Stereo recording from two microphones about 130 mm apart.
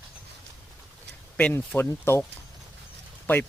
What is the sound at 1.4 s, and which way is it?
Speech, 10° left (ahead or behind).